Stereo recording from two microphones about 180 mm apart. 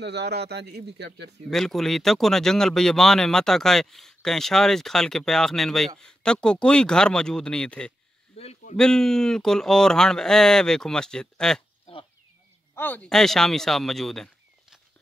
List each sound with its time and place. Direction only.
0.0 s speech: 70° right (ahead or behind)
1.5 s speech: centre (ahead or behind)
8.4 s a sound: 35° left (ahead or behind)
8.7 s speech: 5° left (ahead or behind)
11.8 s a sound: 30° left (ahead or behind)
12.7 s speech: 10° left (ahead or behind)